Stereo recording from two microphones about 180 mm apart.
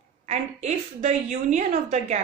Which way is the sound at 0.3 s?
40° right (ahead or behind).